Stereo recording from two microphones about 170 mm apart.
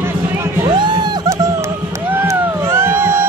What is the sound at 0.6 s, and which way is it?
Music, 25° right (ahead or behind).